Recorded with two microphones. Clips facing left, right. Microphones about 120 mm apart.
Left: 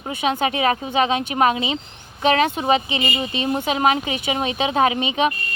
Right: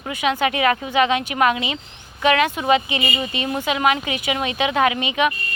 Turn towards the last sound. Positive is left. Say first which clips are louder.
# even
turn(degrees=30)  # may be behind; listen again after turning